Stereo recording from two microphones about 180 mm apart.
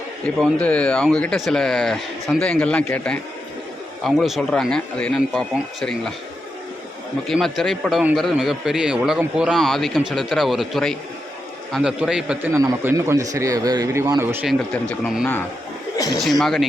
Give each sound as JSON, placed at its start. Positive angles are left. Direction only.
{"t": 0.3, "sound": "a man's voice", "side_deg": 5}
{"t": 7.3, "sound": "a man's voice", "side_deg": 0}
{"t": 12.5, "sound": "a man's voice", "side_deg": -15}
{"t": 14.4, "sound": "a man's voice", "side_deg": 5}
{"t": 16.1, "sound": "a man's voice", "side_deg": 0}